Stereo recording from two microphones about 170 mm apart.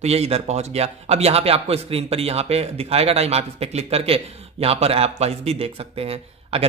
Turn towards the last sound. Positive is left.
turn(degrees=-35)  # may be behind; listen again after turning